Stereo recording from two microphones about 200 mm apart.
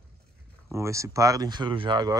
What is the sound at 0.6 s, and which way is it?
Speech, 15° right (ahead or behind).